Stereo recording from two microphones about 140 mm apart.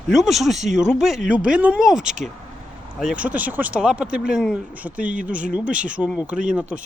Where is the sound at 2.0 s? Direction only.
60° right (ahead or behind).